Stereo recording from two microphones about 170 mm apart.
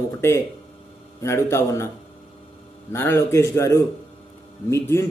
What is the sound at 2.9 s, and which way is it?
A man's voice, 15° left (ahead or behind).